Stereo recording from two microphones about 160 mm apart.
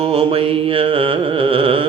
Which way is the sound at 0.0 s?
35° right (ahead or behind).